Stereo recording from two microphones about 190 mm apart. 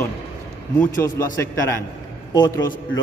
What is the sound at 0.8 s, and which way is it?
A man's voice, 15° left (ahead or behind).